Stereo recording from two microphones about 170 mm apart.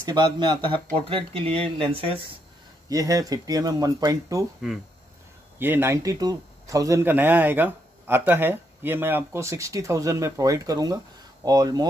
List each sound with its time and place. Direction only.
0.0 s speech: 25° right (ahead or behind)
2.9 s speech: 20° right (ahead or behind)
5.6 s speech: 15° right (ahead or behind)